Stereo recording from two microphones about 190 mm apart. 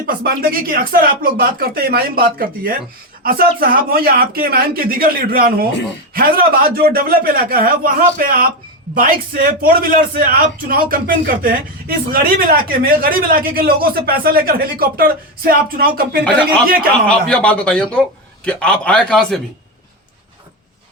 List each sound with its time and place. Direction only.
0.2 s speech: 50° right (ahead or behind)
17.1 s a man's voice: 5° left (ahead or behind)